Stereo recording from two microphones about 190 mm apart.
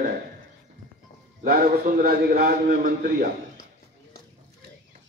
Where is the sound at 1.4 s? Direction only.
50° right (ahead or behind).